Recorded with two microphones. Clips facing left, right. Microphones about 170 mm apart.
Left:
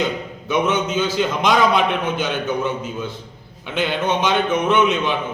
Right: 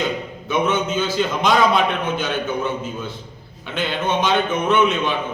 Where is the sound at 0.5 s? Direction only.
15° left (ahead or behind).